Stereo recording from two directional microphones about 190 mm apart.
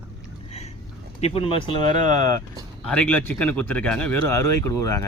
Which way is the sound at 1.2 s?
25° left (ahead or behind).